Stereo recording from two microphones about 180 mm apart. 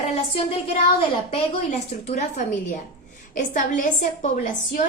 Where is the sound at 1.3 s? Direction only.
40° left (ahead or behind).